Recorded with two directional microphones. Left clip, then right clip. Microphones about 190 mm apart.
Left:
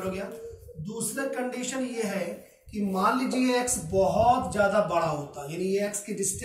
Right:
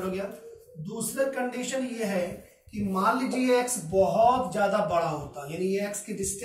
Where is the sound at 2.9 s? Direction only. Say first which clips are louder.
Even; 30° left (ahead or behind).